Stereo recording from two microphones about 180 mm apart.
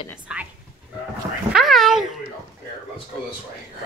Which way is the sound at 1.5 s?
Centre (ahead or behind).